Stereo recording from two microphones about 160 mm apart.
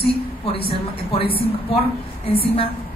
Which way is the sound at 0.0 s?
35° left (ahead or behind).